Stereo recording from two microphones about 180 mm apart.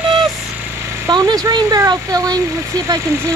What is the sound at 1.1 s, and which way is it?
Speech, 25° right (ahead or behind).